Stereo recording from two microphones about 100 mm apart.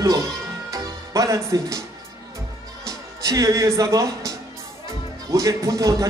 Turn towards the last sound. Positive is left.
turn(degrees=-35)  # may be behind; listen again after turning